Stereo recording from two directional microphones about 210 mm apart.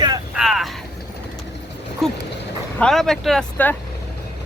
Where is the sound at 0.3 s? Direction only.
Centre (ahead or behind).